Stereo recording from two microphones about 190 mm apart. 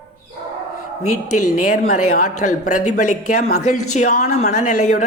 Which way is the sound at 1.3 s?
40° left (ahead or behind).